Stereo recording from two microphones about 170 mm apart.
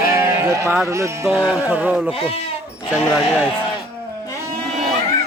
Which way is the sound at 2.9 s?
5° right (ahead or behind).